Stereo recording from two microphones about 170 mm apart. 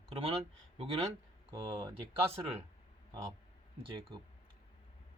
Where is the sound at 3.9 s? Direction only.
30° right (ahead or behind).